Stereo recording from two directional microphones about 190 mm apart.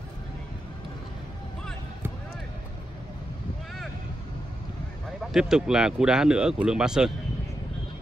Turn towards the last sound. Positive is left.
turn(degrees=-5)  # may be behind; listen again after turning